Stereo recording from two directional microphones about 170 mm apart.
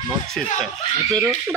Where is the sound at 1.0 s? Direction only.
20° right (ahead or behind).